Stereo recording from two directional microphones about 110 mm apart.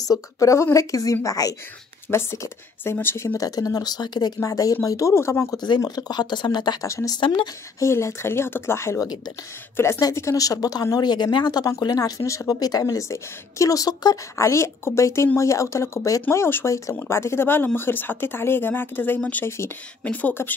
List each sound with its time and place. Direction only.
0.0 s speech: 30° left (ahead or behind)
3.3 s speech: 35° left (ahead or behind)
5.8 s speech: 35° left (ahead or behind)
6.9 s speech: 25° left (ahead or behind)
7.2 s speech: 50° left (ahead or behind)
7.8 s speech: 25° left (ahead or behind)